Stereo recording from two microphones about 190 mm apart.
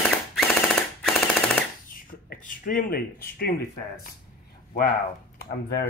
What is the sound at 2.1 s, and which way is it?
Speech, 45° left (ahead or behind).